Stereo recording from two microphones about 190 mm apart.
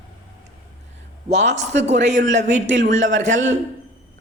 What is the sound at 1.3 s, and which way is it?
A man's voice, 35° right (ahead or behind).